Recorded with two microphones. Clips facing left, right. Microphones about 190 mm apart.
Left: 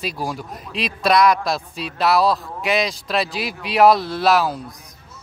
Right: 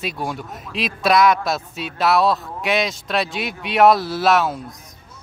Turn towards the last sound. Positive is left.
turn(degrees=0)  # may be behind; listen again after turning